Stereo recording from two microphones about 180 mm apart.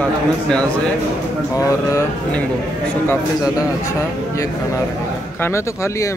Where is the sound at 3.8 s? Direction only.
15° left (ahead or behind).